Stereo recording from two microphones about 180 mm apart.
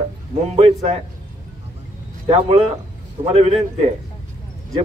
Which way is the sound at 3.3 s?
35° right (ahead or behind).